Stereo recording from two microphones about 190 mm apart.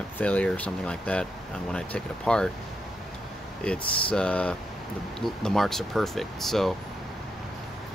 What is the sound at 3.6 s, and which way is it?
Speech, 5° left (ahead or behind).